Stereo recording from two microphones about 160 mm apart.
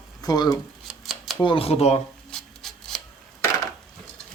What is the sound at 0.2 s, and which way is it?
Speech, 25° left (ahead or behind).